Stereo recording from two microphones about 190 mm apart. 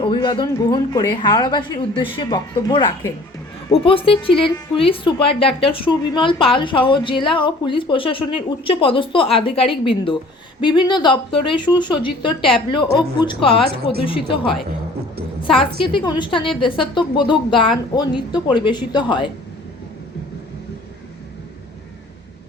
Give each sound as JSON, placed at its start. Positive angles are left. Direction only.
{"t": 0.0, "sound": "a woman's voice", "side_deg": 25}